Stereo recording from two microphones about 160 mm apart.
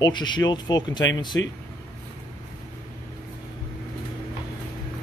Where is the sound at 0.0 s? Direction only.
30° left (ahead or behind).